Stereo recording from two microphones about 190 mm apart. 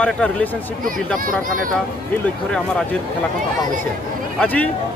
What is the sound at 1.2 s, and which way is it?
Speech, 45° right (ahead or behind).